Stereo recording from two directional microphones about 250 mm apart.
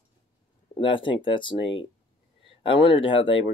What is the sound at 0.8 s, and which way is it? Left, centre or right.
Speech, centre.